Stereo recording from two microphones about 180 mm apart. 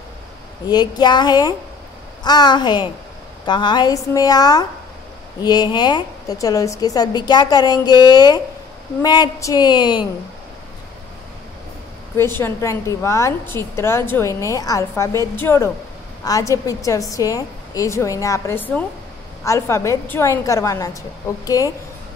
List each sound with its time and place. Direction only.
0.7 s a woman's voice: 25° left (ahead or behind)
12.2 s a woman's voice: 15° left (ahead or behind)